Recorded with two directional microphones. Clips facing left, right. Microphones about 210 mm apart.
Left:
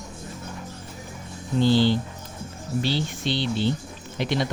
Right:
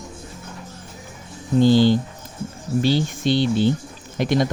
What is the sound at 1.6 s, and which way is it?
Speech, 45° right (ahead or behind).